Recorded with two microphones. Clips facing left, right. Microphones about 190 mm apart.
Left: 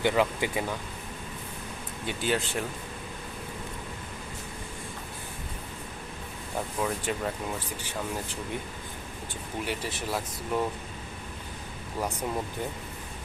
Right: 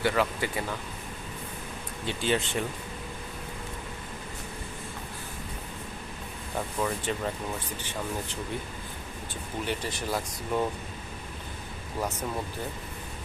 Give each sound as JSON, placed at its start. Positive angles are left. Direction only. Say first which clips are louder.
{"t": 0.0, "sound": "speech", "louder": "left 2 dB", "side_deg": 15}
{"t": 2.0, "sound": "speech", "louder": "right 1 dB", "side_deg": 5}
{"t": 6.7, "sound": "speech", "louder": "even", "side_deg": 5}
{"t": 9.6, "sound": "speech", "louder": "right 2 dB", "side_deg": 5}